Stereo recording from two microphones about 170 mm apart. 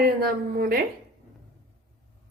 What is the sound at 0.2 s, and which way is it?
Speech, 60° right (ahead or behind).